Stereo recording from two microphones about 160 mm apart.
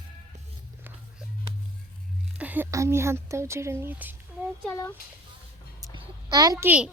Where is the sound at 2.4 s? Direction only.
10° right (ahead or behind).